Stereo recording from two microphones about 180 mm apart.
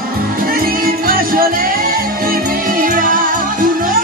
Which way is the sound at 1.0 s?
55° right (ahead or behind).